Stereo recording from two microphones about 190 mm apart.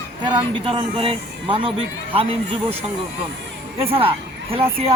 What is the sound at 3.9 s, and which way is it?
Speech, 30° right (ahead or behind).